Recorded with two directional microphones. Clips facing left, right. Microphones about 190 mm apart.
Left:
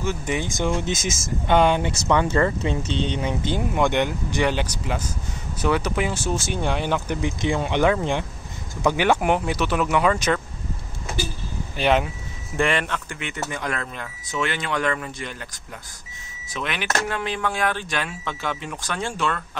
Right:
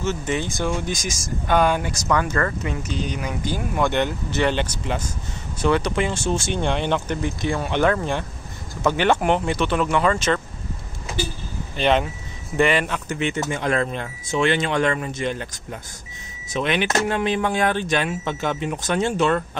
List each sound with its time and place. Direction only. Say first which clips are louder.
0.0 s speech: right 1 dB; 10° left (ahead or behind)
11.7 s speech: right 1 dB; 10° left (ahead or behind)
12.5 s speech: right 3 dB; 5° right (ahead or behind)
13.1 s speech: right 6 dB; 25° right (ahead or behind)
16.5 s speech: right 5 dB; 20° right (ahead or behind)